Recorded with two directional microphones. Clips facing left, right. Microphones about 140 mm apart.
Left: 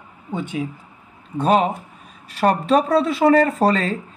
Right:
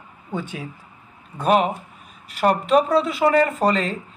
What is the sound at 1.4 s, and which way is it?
Speech, 30° left (ahead or behind).